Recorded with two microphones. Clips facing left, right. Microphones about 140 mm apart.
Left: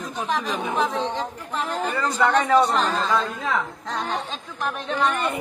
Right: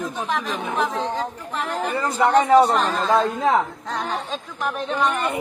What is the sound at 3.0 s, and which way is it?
Speech, 35° right (ahead or behind).